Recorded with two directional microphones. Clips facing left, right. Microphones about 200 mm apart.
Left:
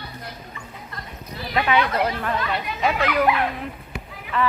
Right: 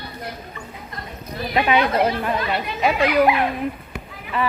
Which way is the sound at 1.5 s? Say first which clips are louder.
Right 3 dB; 20° right (ahead or behind).